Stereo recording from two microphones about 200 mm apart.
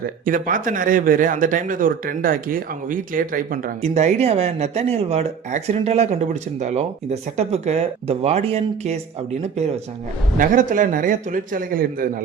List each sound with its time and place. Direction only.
0.0 s speech: 45° right (ahead or behind)
10.3 s a man's voice: 40° right (ahead or behind)